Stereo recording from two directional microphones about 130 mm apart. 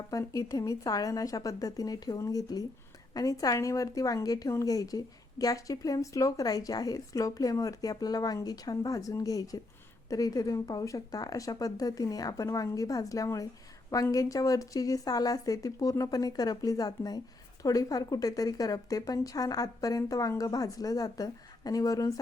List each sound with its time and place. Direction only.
0.1 s a woman's voice: 25° left (ahead or behind)